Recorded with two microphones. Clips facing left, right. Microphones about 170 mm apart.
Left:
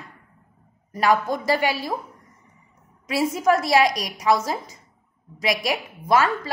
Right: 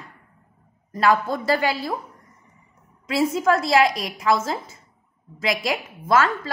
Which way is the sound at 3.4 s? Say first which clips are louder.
Left 1 dB; 15° left (ahead or behind).